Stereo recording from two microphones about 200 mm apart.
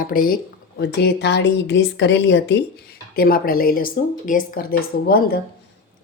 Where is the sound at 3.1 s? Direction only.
45° left (ahead or behind).